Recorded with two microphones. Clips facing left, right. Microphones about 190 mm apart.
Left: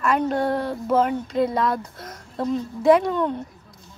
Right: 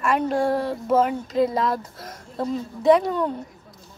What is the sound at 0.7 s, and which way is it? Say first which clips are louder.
Speech: even; 5° right (ahead or behind).